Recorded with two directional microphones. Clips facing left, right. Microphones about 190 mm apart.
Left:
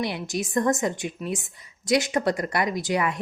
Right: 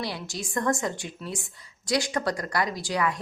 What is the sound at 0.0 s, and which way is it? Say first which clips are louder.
A woman's voice: left 5 dB; 20° left (ahead or behind).